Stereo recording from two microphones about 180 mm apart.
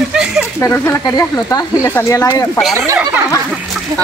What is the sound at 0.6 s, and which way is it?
Speech, 15° left (ahead or behind).